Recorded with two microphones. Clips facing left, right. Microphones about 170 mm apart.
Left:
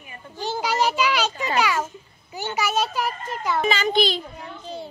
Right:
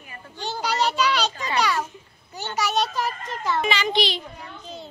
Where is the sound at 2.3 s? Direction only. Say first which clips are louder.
Left 1 dB; 5° left (ahead or behind).